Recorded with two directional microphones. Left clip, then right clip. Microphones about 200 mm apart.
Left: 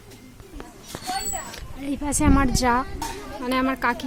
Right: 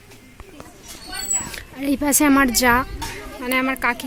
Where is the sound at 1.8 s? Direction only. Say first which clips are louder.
Right 6 dB; 30° right (ahead or behind); by 2.8 s 10° right (ahead or behind).